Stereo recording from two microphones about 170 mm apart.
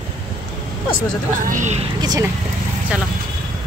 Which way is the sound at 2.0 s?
20° right (ahead or behind).